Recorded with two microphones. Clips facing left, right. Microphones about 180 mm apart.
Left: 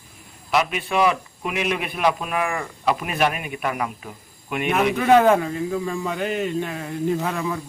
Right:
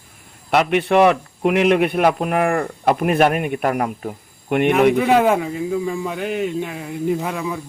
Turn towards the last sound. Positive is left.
turn(degrees=-5)  # may be behind; listen again after turning